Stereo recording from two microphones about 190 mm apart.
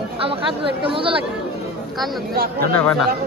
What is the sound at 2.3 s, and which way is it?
Speech, 55° right (ahead or behind).